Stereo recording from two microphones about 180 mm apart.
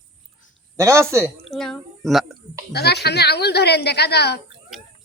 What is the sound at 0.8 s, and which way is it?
Speech, 15° right (ahead or behind).